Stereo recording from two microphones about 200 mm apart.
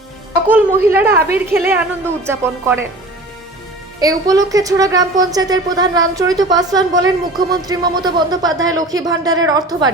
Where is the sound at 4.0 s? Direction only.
15° right (ahead or behind).